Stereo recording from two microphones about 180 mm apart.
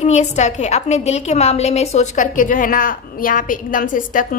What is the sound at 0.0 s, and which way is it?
A woman's voice, 40° left (ahead or behind).